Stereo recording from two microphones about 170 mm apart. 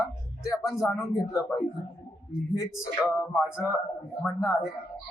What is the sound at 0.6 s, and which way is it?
Speech, centre (ahead or behind).